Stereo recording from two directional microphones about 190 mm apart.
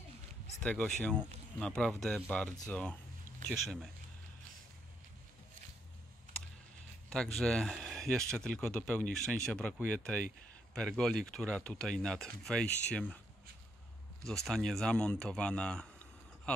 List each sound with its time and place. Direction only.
0.6 s speech: 5° left (ahead or behind)
7.1 s speech: centre (ahead or behind)
14.2 s speech: centre (ahead or behind)